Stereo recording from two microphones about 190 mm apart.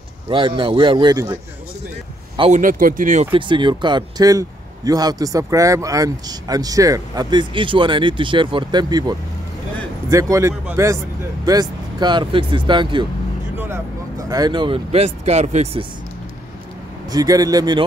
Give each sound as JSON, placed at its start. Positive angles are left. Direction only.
{"t": 0.3, "sound": "a man's voice", "side_deg": -25}
{"t": 2.5, "sound": "speech", "side_deg": -45}
{"t": 3.3, "sound": "a man's voice", "side_deg": -25}
{"t": 10.3, "sound": "a man's voice", "side_deg": -15}
{"t": 17.1, "sound": "a man's voice", "side_deg": -20}